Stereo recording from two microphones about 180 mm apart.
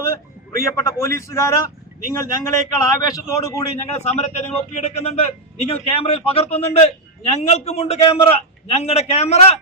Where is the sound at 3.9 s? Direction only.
35° left (ahead or behind).